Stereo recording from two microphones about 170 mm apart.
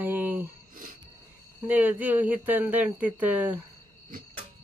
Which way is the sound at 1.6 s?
10° right (ahead or behind).